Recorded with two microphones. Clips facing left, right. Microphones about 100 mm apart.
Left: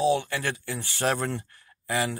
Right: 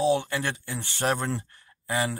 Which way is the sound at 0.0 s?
20° right (ahead or behind).